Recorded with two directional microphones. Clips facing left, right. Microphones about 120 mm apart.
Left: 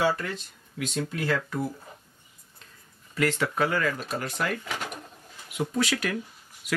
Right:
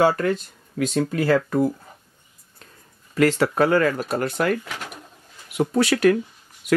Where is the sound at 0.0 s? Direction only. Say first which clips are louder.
Right 8 dB; 50° right (ahead or behind).